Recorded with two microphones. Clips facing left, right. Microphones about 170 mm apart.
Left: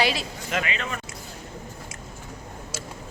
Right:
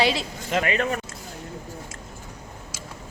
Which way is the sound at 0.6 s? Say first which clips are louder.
Right 7 dB; 45° right (ahead or behind).